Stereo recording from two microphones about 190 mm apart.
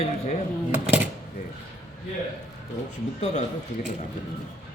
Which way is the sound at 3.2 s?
40° left (ahead or behind).